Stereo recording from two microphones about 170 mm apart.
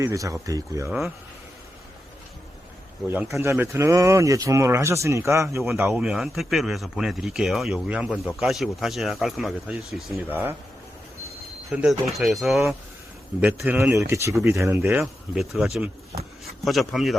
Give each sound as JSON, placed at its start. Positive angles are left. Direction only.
{"t": 0.0, "sound": "speech", "side_deg": -20}
{"t": 0.9, "sound": "speech", "side_deg": 0}
{"t": 3.1, "sound": "speech", "side_deg": -15}
{"t": 11.7, "sound": "speech", "side_deg": -5}
{"t": 13.4, "sound": "speech", "side_deg": -10}
{"t": 15.0, "sound": "speech", "side_deg": 0}